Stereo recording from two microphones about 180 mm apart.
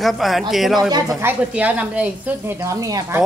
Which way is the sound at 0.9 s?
20° right (ahead or behind).